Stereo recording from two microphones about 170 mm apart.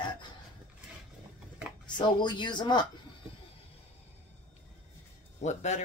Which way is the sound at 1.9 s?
25° left (ahead or behind).